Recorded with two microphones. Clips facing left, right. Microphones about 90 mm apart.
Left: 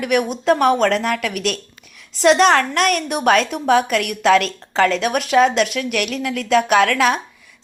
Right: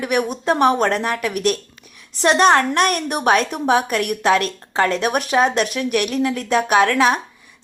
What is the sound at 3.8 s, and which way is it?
Speech, 35° right (ahead or behind).